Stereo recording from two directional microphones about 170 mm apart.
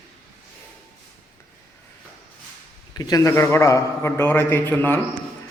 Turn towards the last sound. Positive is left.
turn(degrees=10)  # may be behind; listen again after turning